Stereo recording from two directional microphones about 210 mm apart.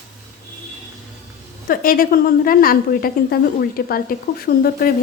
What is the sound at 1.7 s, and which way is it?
A woman's voice, 45° left (ahead or behind).